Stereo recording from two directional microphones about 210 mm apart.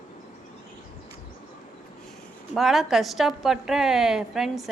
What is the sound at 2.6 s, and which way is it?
Speech, centre (ahead or behind).